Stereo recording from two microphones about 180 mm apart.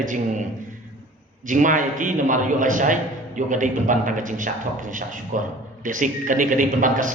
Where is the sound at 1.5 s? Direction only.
45° right (ahead or behind).